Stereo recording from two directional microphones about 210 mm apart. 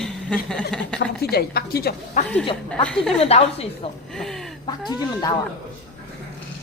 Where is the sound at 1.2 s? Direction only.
50° left (ahead or behind).